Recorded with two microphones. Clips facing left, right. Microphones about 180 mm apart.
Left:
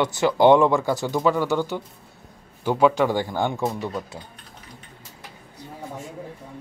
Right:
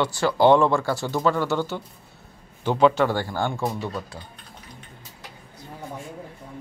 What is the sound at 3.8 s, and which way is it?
Speech, 15° left (ahead or behind).